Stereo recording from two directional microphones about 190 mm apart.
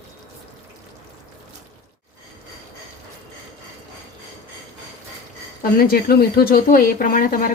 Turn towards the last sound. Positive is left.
turn(degrees=45)  # may be behind; listen again after turning